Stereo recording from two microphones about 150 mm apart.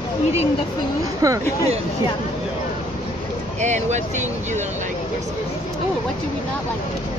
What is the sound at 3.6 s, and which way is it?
Speech, 50° right (ahead or behind).